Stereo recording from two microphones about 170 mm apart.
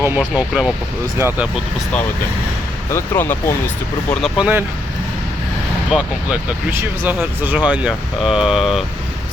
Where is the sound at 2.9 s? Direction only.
15° left (ahead or behind).